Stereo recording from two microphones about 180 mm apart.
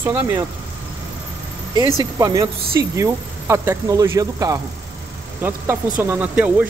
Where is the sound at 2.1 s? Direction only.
20° right (ahead or behind).